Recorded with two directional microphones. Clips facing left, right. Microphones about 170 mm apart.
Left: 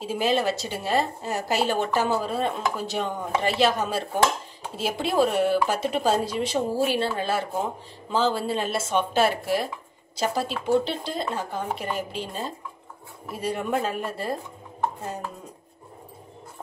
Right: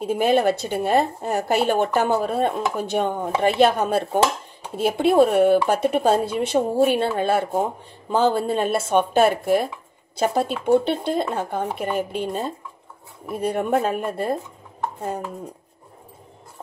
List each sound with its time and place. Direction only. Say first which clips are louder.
0.0 s a woman's voice: right 5 dB; 55° right (ahead or behind)